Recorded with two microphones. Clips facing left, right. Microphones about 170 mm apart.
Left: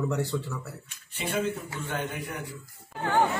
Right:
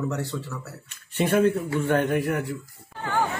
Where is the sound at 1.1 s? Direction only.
65° right (ahead or behind).